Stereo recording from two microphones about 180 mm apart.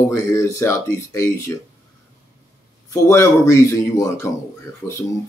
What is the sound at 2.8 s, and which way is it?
Speech, 15° left (ahead or behind).